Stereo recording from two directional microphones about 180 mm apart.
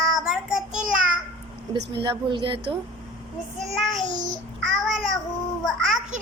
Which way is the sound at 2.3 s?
25° right (ahead or behind).